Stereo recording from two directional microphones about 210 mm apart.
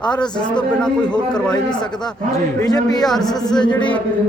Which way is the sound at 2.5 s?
20° left (ahead or behind).